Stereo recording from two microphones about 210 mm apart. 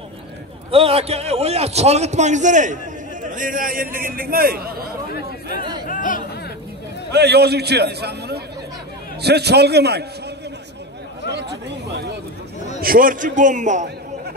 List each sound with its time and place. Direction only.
0.7 s a man's voice: 25° right (ahead or behind); by 4.8 s 45° right (ahead or behind)
5.9 s chatter: 40° left (ahead or behind)
7.1 s a man's voice: 50° right (ahead or behind)
12.8 s a man's voice: 40° right (ahead or behind)